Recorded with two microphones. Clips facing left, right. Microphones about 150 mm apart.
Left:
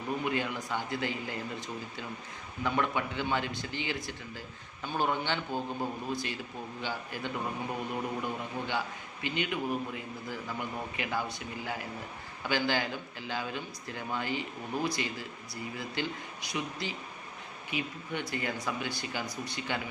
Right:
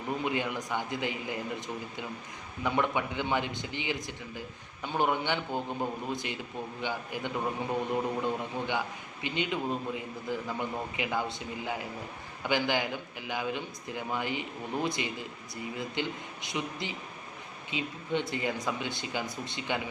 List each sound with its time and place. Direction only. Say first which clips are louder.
0.3 s a man's voice: right 1 dB; 20° right (ahead or behind)